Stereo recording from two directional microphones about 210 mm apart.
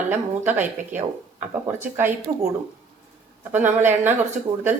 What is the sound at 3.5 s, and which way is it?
Speech, 10° right (ahead or behind).